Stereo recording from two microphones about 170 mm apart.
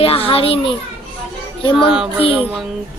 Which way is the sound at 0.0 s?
35° left (ahead or behind).